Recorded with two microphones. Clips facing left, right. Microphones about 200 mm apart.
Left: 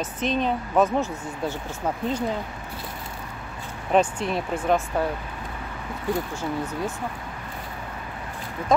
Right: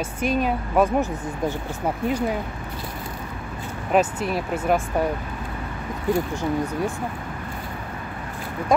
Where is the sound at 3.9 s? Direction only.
5° right (ahead or behind).